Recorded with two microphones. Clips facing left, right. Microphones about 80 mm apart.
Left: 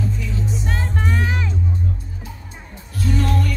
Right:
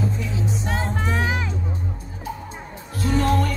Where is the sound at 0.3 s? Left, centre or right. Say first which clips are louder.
Even; centre.